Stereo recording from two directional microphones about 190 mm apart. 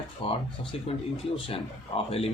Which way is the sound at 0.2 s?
25° left (ahead or behind).